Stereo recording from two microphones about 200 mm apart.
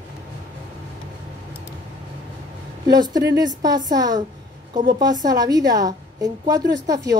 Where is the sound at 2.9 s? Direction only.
20° right (ahead or behind).